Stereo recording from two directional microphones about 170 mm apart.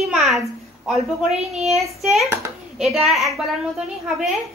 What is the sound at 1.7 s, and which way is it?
A woman's voice, centre (ahead or behind).